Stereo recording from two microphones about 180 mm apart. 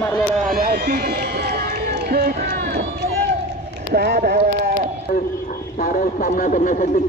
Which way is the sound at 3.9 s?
65° right (ahead or behind).